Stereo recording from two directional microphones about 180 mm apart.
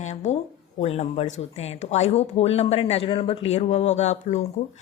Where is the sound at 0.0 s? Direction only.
40° left (ahead or behind).